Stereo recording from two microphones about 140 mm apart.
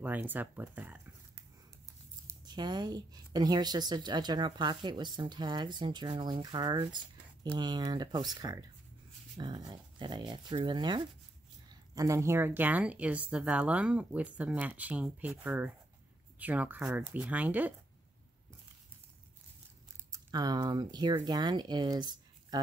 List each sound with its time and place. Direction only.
0.0 s a woman's voice: 15° right (ahead or behind)
2.2 s a woman's voice: 30° right (ahead or behind); by 17.7 s 10° right (ahead or behind)
20.1 s speech: 25° right (ahead or behind)